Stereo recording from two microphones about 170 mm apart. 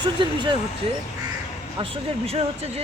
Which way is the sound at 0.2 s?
30° right (ahead or behind).